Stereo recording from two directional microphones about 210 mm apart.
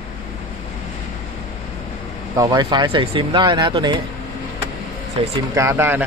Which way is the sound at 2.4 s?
15° right (ahead or behind).